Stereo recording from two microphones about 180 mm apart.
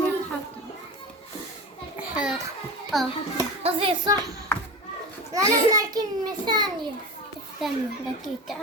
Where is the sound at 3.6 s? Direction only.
30° right (ahead or behind).